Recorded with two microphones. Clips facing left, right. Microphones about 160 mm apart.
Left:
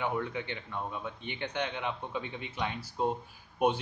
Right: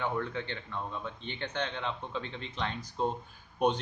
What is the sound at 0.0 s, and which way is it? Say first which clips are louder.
A man's voice: even; 15° left (ahead or behind).